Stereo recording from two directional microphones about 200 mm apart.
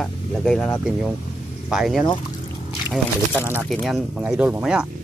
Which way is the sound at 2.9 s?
10° right (ahead or behind).